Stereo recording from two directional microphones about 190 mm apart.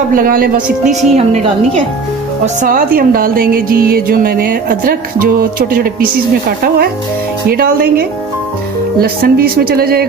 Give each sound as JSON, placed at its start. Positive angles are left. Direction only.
{"t": 0.1, "sound": "speech", "side_deg": -50}
{"t": 0.7, "sound": "speech", "side_deg": 0}
{"t": 1.1, "sound": "a woman's voice", "side_deg": -35}